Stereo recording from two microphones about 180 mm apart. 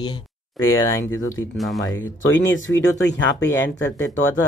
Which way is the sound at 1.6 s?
Centre (ahead or behind).